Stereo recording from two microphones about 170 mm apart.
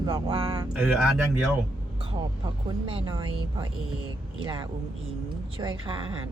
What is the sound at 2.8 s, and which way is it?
Speech, 25° right (ahead or behind).